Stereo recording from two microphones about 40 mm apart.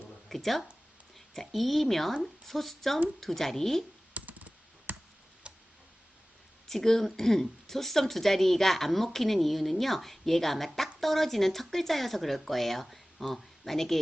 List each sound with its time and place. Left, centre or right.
0.3 s speech: centre
4.1 s computer keyboard: right
4.9 s clicking: right
5.5 s tick-tock: right
6.7 s speech: centre